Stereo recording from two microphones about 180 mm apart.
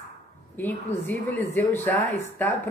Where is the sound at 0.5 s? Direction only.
10° left (ahead or behind).